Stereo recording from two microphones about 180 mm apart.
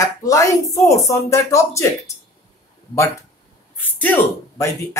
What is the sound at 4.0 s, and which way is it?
Speech, 15° left (ahead or behind).